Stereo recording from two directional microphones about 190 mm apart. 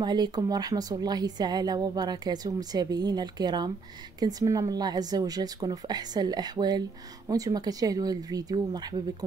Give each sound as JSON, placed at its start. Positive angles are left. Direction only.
{"t": 0.0, "sound": "a woman's voice", "side_deg": -20}